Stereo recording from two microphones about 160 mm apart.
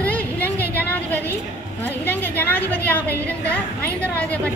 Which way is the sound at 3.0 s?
15° right (ahead or behind).